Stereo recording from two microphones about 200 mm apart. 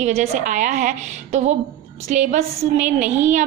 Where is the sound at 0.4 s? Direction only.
40° right (ahead or behind).